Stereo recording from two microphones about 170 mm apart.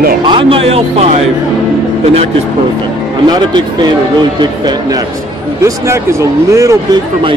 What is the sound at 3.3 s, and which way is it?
Speech, 25° right (ahead or behind).